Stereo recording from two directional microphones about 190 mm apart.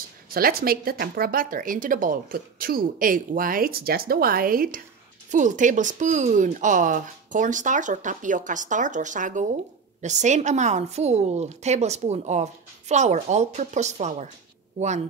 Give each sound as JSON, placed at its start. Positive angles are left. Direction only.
{"t": 0.3, "sound": "a woman's voice", "side_deg": -50}